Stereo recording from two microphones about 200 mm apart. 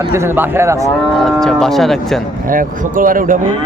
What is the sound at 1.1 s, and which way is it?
Livestock, centre (ahead or behind).